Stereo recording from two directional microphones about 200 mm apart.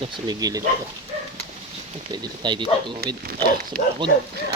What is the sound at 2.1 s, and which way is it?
Speech, 20° right (ahead or behind).